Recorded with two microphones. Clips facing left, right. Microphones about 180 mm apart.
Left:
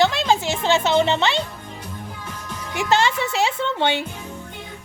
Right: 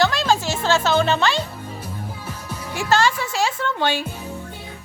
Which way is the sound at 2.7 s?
20° left (ahead or behind).